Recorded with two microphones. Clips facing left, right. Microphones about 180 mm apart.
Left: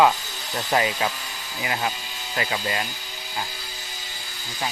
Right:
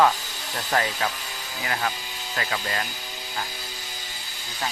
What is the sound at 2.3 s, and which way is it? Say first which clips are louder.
Speech: left 2 dB; 15° left (ahead or behind).